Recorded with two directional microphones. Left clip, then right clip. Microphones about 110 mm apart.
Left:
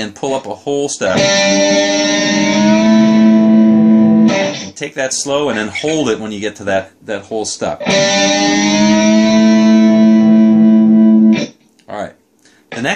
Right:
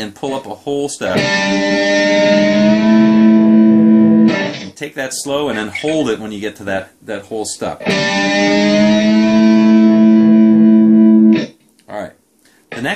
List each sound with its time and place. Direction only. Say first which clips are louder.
0.0 s speech: left 3 dB; 20° left (ahead or behind)
1.1 s music: left 4 dB; 40° right (ahead or behind)
4.7 s speech: left 4 dB; 20° left (ahead or behind)
7.8 s music: left 3 dB; 40° right (ahead or behind)
11.9 s a sound: left 2 dB; 20° left (ahead or behind)